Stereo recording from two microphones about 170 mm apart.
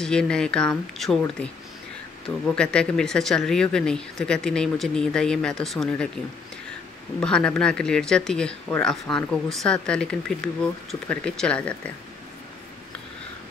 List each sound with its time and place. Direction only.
0.0 s speech: 5° left (ahead or behind)
2.2 s speech: 5° left (ahead or behind)
7.2 s speech: 5° left (ahead or behind)